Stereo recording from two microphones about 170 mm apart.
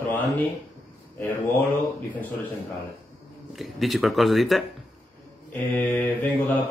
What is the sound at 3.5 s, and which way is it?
Speech, centre (ahead or behind).